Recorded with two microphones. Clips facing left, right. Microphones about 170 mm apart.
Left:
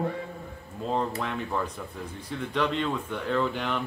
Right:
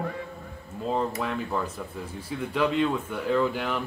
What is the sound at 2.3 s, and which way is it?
Speech, 5° right (ahead or behind).